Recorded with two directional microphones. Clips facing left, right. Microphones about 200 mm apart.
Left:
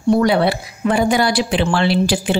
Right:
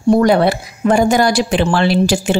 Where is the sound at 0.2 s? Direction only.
45° right (ahead or behind).